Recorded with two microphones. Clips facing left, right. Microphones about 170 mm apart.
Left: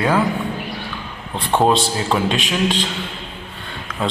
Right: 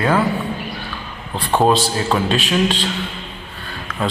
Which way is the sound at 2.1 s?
15° left (ahead or behind).